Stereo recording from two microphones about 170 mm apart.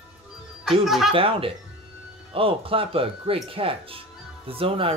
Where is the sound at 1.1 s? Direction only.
30° right (ahead or behind).